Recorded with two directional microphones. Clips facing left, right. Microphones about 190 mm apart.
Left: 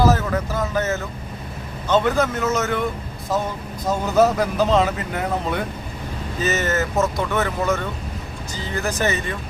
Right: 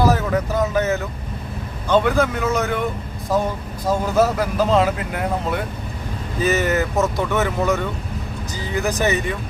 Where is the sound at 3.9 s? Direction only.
5° right (ahead or behind).